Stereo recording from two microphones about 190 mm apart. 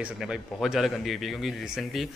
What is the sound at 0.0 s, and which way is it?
A man's voice, 5° right (ahead or behind).